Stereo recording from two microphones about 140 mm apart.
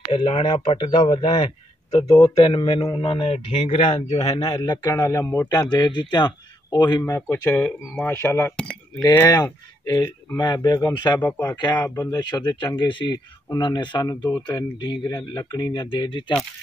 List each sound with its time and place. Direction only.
0.1 s speech: 35° left (ahead or behind)
4.6 s speech: 20° left (ahead or behind)
7.2 s speech: 15° left (ahead or behind)
9.8 s speech: 25° left (ahead or behind)
11.1 s speech: 10° left (ahead or behind)
11.4 s speech: 30° left (ahead or behind)